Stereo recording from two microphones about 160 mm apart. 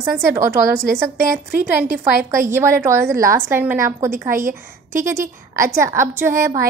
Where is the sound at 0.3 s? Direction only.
15° right (ahead or behind).